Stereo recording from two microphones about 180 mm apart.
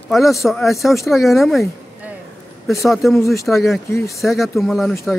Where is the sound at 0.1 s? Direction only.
Centre (ahead or behind).